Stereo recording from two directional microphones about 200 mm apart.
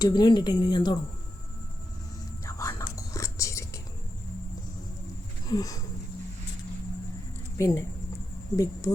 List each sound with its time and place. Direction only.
0.0 s speech: 20° left (ahead or behind)
2.5 s whispering: 15° left (ahead or behind)
5.5 s speech: 20° left (ahead or behind)
7.6 s speech: 15° left (ahead or behind)